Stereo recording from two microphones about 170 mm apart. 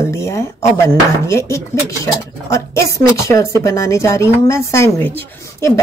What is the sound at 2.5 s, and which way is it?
A woman's voice, 20° left (ahead or behind).